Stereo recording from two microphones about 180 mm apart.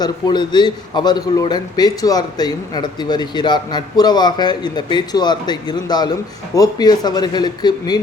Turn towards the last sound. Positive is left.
turn(degrees=20)  # may be behind; listen again after turning